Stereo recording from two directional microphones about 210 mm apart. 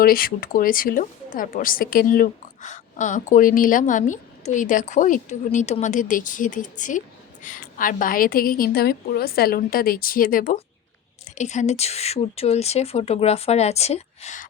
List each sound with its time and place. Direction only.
0.0 s a woman's voice: 45° left (ahead or behind)